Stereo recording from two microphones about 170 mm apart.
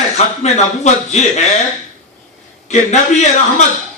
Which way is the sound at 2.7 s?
45° left (ahead or behind).